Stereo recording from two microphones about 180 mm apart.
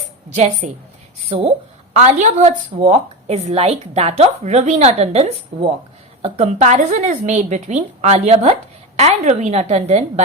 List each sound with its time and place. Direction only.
0.3 s a woman's voice: 40° right (ahead or behind)
2.0 s a woman's voice: 40° right (ahead or behind)